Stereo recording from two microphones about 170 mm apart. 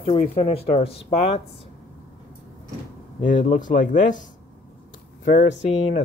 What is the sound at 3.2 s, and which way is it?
Speech, 50° left (ahead or behind).